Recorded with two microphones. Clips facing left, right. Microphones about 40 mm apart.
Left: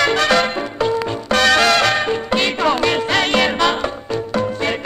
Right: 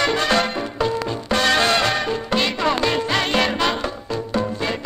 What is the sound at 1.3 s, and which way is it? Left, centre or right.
Music, left.